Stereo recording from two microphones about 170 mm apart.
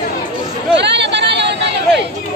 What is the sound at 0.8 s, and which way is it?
Chatter, 90° right.